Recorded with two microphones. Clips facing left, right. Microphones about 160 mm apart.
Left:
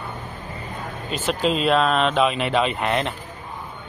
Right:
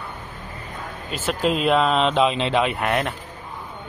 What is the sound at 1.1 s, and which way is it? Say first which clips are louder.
Speech: even; 10° right (ahead or behind).